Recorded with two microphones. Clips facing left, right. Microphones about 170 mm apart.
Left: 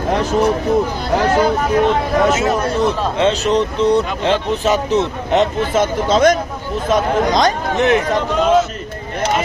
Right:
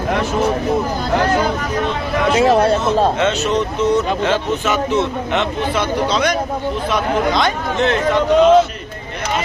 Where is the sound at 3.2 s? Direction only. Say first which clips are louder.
Left 2 dB; 35° left (ahead or behind).